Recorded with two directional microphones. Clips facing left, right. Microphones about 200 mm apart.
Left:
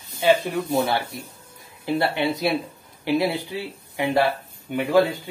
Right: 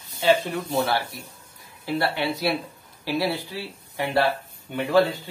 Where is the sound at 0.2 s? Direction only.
10° left (ahead or behind).